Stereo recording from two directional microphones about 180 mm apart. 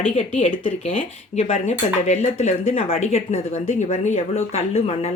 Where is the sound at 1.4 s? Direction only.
35° left (ahead or behind).